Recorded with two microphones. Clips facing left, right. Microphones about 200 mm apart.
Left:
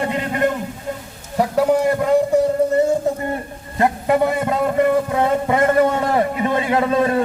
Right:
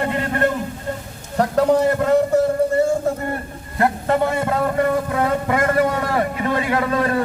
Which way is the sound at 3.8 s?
15° left (ahead or behind).